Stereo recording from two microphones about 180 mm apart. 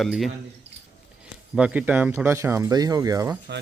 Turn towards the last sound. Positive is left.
turn(degrees=-20)  # may be behind; listen again after turning